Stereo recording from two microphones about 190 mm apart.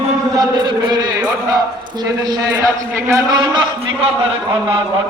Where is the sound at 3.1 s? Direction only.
20° right (ahead or behind).